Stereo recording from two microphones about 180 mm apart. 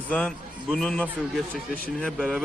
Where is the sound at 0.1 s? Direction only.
5° left (ahead or behind).